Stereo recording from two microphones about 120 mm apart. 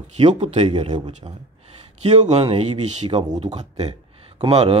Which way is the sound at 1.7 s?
65° right (ahead or behind).